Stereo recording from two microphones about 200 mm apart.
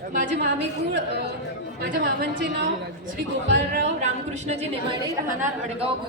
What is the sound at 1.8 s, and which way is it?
Speech, 55° right (ahead or behind).